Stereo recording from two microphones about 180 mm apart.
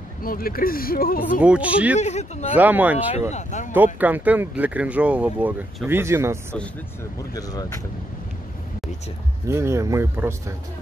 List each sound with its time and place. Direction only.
0.2 s speech: 55° left (ahead or behind)
1.4 s speech: 5° right (ahead or behind)
2.0 s speech: 40° left (ahead or behind)
2.5 s speech: 10° right (ahead or behind)
3.3 s speech: 40° left (ahead or behind)
3.7 s speech: 10° right (ahead or behind)
9.5 s speech: 15° right (ahead or behind)